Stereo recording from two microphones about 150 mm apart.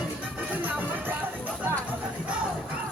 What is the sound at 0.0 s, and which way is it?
Music, 10° right (ahead or behind).